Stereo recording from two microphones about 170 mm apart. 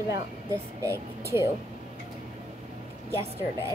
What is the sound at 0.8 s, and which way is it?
Speech, 15° right (ahead or behind).